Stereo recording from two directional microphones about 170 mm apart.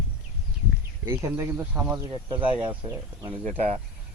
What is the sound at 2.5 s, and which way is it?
Speech, 30° right (ahead or behind).